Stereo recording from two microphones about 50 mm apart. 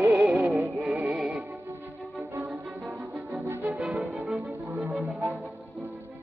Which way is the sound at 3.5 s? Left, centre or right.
Right.